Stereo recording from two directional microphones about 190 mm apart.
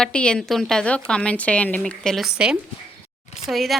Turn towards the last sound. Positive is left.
turn(degrees=0)  # may be behind; listen again after turning